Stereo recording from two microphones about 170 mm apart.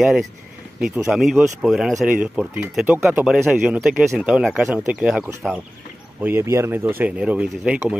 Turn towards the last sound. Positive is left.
turn(degrees=-5)  # may be behind; listen again after turning